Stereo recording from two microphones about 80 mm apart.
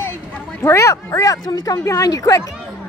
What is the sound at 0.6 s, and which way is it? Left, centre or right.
Speech, left.